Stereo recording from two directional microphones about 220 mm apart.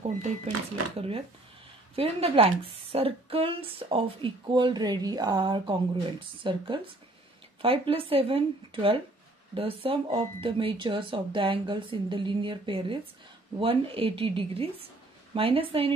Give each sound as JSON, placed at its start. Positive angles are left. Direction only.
{"t": 0.9, "sound": "speech", "side_deg": -25}